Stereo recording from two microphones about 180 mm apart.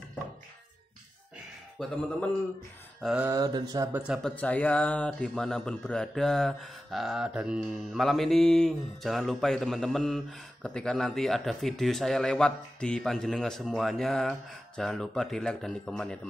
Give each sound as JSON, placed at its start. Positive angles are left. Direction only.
{"t": 1.8, "sound": "speech", "side_deg": 5}
{"t": 3.0, "sound": "a sound", "side_deg": -5}
{"t": 3.3, "sound": "mantra", "side_deg": -20}
{"t": 4.1, "sound": "speech", "side_deg": 5}